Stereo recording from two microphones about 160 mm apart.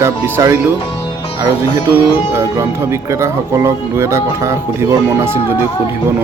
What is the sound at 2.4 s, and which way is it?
Speech, 15° right (ahead or behind).